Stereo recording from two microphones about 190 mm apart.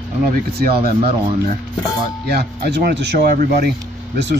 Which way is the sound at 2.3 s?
55° right (ahead or behind).